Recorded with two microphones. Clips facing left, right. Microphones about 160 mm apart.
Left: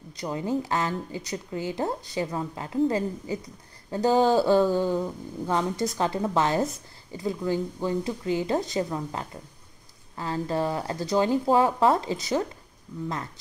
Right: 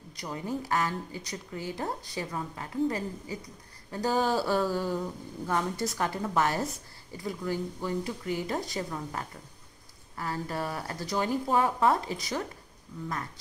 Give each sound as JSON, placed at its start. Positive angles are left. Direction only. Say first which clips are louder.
{"t": 0.2, "sound": "speech", "louder": "left 6 dB", "side_deg": 20}